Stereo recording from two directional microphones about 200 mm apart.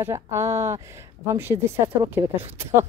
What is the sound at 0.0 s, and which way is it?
Speech, 15° right (ahead or behind).